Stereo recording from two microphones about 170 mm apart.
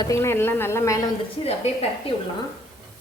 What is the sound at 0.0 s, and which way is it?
A woman's voice, 15° left (ahead or behind).